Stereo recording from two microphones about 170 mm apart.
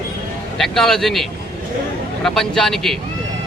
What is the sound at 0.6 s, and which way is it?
A man's voice, centre (ahead or behind).